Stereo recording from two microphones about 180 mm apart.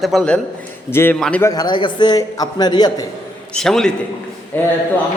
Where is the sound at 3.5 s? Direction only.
5° left (ahead or behind).